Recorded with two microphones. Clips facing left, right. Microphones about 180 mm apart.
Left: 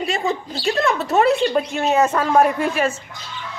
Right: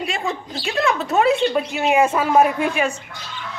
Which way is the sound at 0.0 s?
Centre (ahead or behind).